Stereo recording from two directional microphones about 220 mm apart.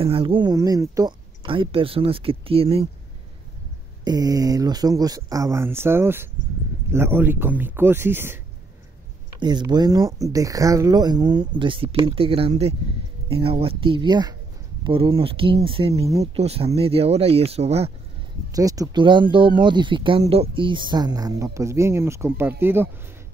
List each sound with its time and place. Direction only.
0.0 s speech: 25° right (ahead or behind)
4.0 s speech: 15° right (ahead or behind)
18.5 s speech: 15° right (ahead or behind)